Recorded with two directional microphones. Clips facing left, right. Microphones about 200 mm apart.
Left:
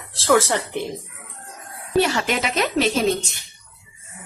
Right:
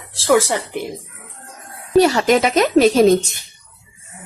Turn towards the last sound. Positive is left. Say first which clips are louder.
# right 8 dB
turn(degrees=-45)  # may be behind; listen again after turning